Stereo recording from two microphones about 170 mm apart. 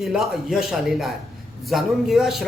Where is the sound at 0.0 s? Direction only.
Centre (ahead or behind).